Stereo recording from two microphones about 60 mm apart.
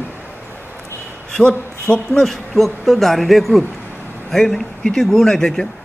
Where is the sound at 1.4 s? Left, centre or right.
Centre.